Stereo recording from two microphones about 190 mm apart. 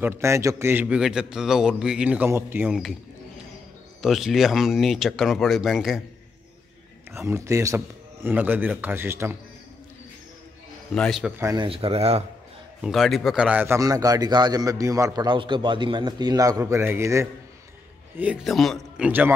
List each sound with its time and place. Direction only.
0.0 s a man's voice: 15° right (ahead or behind)
4.0 s speech: centre (ahead or behind)
7.1 s a man's voice: 15° right (ahead or behind)
11.0 s speech: centre (ahead or behind)
11.4 s a man's voice: 25° right (ahead or behind)
12.8 s a man's voice: centre (ahead or behind)
18.2 s speech: 5° right (ahead or behind)